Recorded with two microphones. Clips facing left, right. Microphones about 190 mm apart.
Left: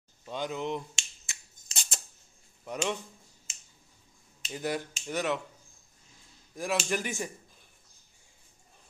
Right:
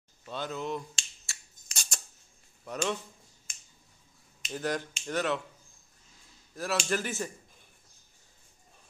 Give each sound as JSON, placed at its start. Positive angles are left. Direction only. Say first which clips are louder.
{"t": 0.3, "sound": "finger snapping", "louder": "left 2 dB", "side_deg": 15}
{"t": 2.6, "sound": "speech", "louder": "even", "side_deg": 15}
{"t": 4.5, "sound": "speech", "louder": "even", "side_deg": 10}
{"t": 6.5, "sound": "speech", "louder": "even", "side_deg": 15}